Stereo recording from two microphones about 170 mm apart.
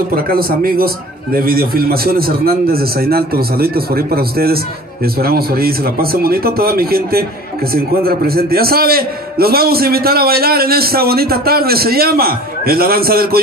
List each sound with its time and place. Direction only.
0.1 s speech: 60° right (ahead or behind)